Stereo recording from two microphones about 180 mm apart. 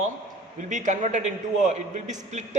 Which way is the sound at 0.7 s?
45° right (ahead or behind).